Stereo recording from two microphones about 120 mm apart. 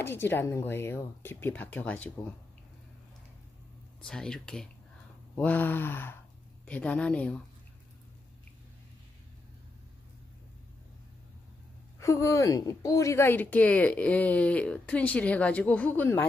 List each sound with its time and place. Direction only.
0.0 s speech: 20° left (ahead or behind)
4.0 s speech: 5° left (ahead or behind)
12.0 s speech: 25° left (ahead or behind)